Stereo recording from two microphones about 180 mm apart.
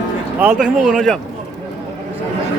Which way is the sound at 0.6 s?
5° right (ahead or behind).